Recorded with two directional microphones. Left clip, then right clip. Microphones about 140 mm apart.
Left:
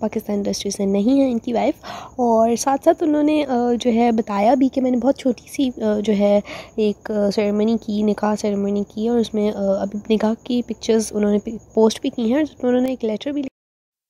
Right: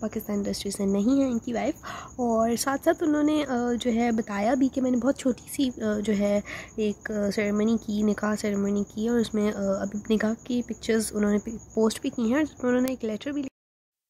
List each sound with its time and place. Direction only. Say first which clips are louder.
0.0 s speech: left 8 dB; 25° left (ahead or behind)